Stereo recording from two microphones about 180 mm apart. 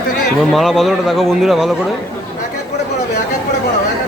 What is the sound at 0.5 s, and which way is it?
Speech, centre (ahead or behind).